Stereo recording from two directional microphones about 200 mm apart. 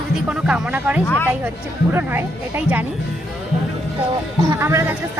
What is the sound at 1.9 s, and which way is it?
Speech, 10° right (ahead or behind).